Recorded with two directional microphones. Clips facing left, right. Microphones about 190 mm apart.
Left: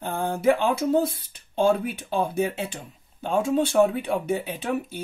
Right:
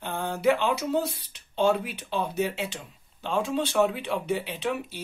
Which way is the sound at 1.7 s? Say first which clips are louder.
Left 3 dB; 50° left (ahead or behind).